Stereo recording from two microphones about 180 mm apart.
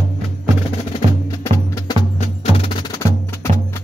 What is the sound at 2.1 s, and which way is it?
Wood block, 30° left (ahead or behind).